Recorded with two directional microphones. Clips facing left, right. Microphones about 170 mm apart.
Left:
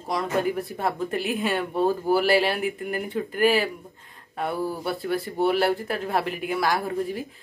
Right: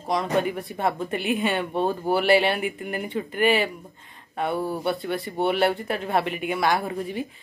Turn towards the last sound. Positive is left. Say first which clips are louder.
# even
turn(degrees=0)  # may be behind; listen again after turning